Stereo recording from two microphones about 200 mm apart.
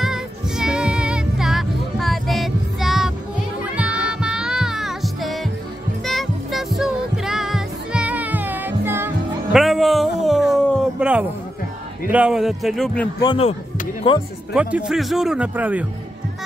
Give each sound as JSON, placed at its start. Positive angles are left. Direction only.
{"t": 0.0, "sound": "child singing", "side_deg": -5}
{"t": 3.7, "sound": "music", "side_deg": -5}
{"t": 9.6, "sound": "a sound", "side_deg": 0}
{"t": 12.1, "sound": "speech", "side_deg": -5}
{"t": 13.2, "sound": "speech", "side_deg": 25}
{"t": 14.5, "sound": "speech", "side_deg": -5}